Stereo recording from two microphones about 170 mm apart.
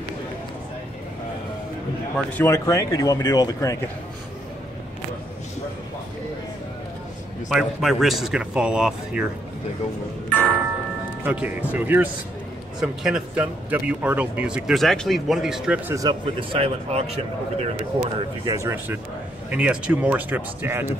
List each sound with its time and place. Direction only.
2.1 s speech: 10° left (ahead or behind)
7.4 s speech: centre (ahead or behind)
10.3 s a sound: 10° right (ahead or behind)
11.2 s speech: 10° right (ahead or behind)
15.9 s speech: 25° right (ahead or behind)
18.4 s speech: 20° right (ahead or behind)